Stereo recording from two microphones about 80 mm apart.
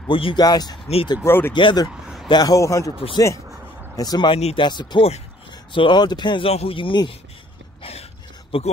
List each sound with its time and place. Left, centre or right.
0.1 s speech: left
1.2 s speech: left
1.5 s speech: left
2.4 s speech: left
3.9 s speech: left